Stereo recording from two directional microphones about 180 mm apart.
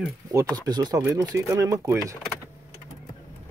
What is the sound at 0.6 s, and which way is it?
Speech, 20° right (ahead or behind).